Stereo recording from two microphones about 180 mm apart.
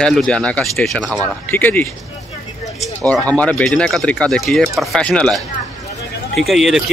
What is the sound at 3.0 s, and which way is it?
Speech, 5° left (ahead or behind).